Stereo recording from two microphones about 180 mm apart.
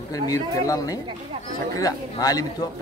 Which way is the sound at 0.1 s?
20° left (ahead or behind).